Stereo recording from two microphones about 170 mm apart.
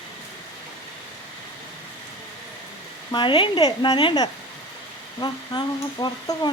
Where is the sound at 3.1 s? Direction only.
30° left (ahead or behind).